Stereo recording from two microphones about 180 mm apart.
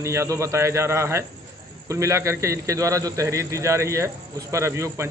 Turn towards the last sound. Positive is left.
turn(degrees=-15)  # may be behind; listen again after turning